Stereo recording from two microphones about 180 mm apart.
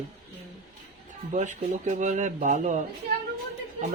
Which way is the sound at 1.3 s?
40° right (ahead or behind).